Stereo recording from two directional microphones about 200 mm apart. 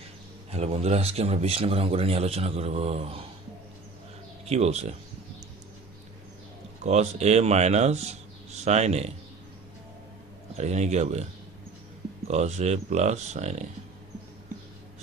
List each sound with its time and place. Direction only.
0.5 s a man's voice: 30° right (ahead or behind)
4.4 s a man's voice: 30° right (ahead or behind)
6.8 s a man's voice: 35° right (ahead or behind)
10.6 s a man's voice: 35° right (ahead or behind)
12.3 s a man's voice: 35° right (ahead or behind)